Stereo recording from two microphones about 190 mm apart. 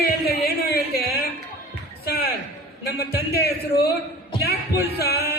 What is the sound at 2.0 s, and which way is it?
A woman's voice, 55° left (ahead or behind).